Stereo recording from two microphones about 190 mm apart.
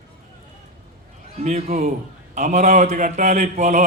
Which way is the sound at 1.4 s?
35° right (ahead or behind).